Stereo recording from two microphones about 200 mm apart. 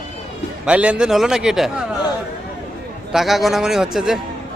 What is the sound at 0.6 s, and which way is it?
A man's voice, 5° right (ahead or behind).